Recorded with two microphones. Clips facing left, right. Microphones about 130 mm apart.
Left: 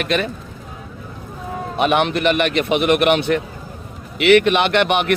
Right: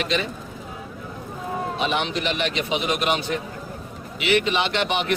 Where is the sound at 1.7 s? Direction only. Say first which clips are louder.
Left 10 dB; 60° left (ahead or behind).